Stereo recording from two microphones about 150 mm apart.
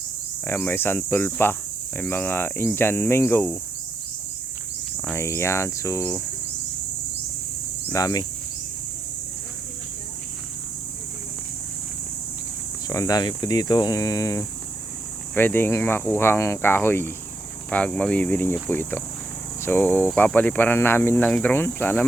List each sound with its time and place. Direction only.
0.4 s speech: 15° left (ahead or behind)
5.1 s speech: 20° left (ahead or behind)
7.9 s speech: 25° left (ahead or behind)
12.9 s speech: 25° left (ahead or behind)